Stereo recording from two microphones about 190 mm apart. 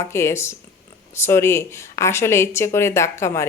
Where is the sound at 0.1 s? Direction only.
15° left (ahead or behind).